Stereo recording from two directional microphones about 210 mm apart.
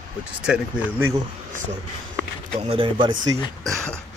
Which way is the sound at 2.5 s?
25° right (ahead or behind).